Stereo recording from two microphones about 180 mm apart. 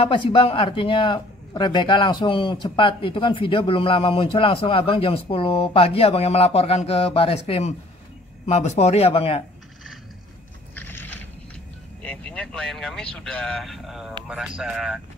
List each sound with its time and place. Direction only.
0.0 s a man's voice: 30° left (ahead or behind)
10.7 s a sound: 10° left (ahead or behind)
12.0 s speech: 5° left (ahead or behind)